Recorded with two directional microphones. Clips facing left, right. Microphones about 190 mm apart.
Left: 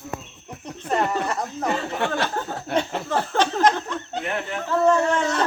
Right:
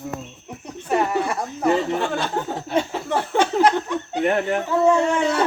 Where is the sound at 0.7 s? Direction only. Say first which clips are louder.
Right 2 dB; 10° right (ahead or behind).